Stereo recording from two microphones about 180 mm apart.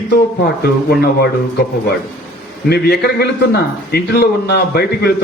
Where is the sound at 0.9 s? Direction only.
60° left (ahead or behind).